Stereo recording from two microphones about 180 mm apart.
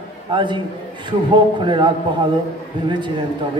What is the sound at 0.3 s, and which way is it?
A man's voice, 25° right (ahead or behind).